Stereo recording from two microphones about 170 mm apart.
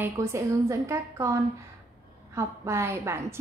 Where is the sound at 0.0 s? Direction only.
15° right (ahead or behind).